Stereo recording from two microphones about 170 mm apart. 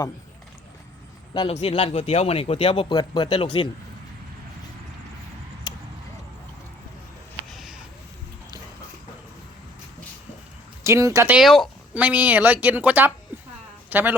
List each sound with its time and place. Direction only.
1.3 s speech: 30° left (ahead or behind)
7.5 s a sound: centre (ahead or behind)
10.8 s a woman's voice: 15° right (ahead or behind)
11.3 s a woman's voice: centre (ahead or behind)